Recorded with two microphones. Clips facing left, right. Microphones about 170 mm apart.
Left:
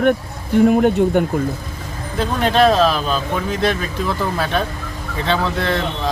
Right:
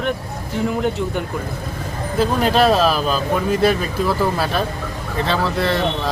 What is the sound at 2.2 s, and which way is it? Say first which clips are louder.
Speech: left 1 dB; 5° right (ahead or behind).